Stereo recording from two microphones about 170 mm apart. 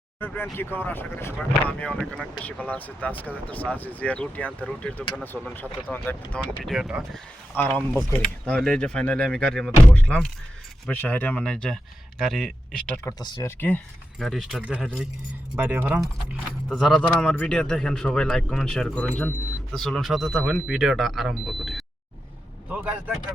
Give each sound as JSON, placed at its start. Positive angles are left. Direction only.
{"t": 0.5, "sound": "speech", "side_deg": 10}
{"t": 6.3, "sound": "speech", "side_deg": 0}
{"t": 7.5, "sound": "speech", "side_deg": 10}
{"t": 13.1, "sound": "speech", "side_deg": 25}
{"t": 13.6, "sound": "speech", "side_deg": 10}
{"t": 16.6, "sound": "speech", "side_deg": 5}